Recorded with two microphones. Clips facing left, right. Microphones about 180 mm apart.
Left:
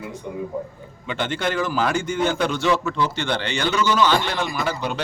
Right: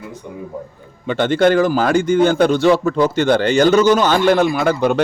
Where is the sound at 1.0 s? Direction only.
40° right (ahead or behind).